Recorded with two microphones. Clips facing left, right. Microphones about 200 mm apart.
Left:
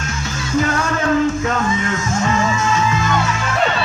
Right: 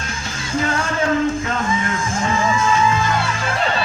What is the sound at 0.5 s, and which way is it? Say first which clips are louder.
Music: left 3 dB; 30° right (ahead or behind).